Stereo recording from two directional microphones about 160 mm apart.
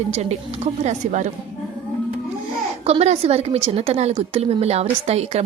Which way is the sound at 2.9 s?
40° right (ahead or behind).